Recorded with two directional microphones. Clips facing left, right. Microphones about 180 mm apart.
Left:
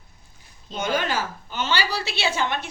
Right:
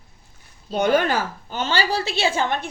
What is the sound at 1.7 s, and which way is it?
A woman's voice, 45° right (ahead or behind).